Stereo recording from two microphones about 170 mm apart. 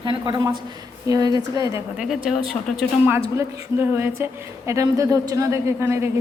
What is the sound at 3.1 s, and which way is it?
A woman's voice, 15° right (ahead or behind).